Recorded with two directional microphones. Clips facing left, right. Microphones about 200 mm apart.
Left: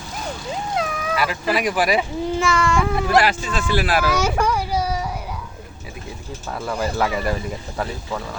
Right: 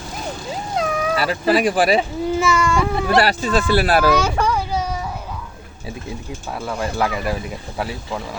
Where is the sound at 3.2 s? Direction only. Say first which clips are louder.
Right 4 dB; 35° right (ahead or behind).